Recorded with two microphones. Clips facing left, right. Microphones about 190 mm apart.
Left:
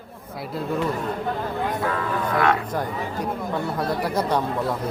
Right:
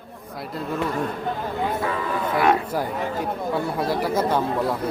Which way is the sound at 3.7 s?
Centre (ahead or behind).